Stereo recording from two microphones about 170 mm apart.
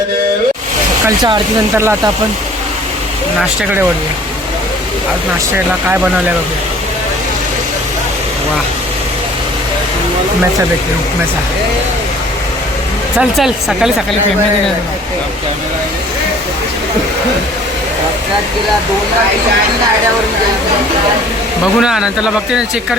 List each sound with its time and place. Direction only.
1.0 s speech: 25° right (ahead or behind)
1.7 s speech: 15° right (ahead or behind)
13.1 s speech: centre (ahead or behind)
21.8 s speech: 5° right (ahead or behind)